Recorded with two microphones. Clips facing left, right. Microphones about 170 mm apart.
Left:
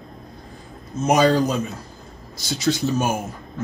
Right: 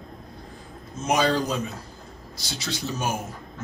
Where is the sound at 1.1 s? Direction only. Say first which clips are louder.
Left 6 dB; 45° left (ahead or behind).